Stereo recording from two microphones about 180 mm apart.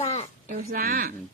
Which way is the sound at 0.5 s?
50° right (ahead or behind).